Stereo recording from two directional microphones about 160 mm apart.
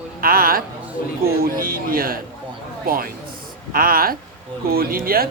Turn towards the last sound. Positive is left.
turn(degrees=-65)  # may be behind; listen again after turning